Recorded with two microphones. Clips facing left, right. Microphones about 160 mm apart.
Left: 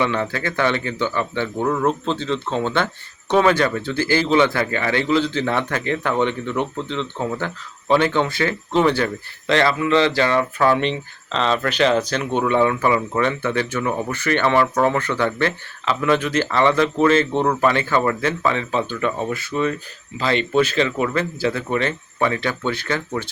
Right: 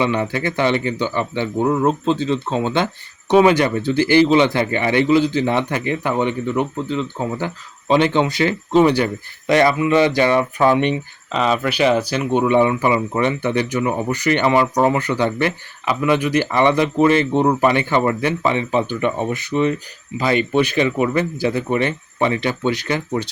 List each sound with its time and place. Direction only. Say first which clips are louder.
0.0 s speech: right 2 dB; 15° right (ahead or behind)